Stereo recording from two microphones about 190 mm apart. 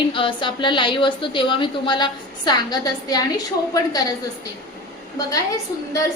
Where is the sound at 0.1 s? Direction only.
25° left (ahead or behind).